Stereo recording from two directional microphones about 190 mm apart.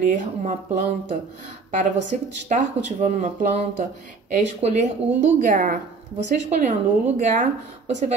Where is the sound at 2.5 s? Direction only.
45° right (ahead or behind).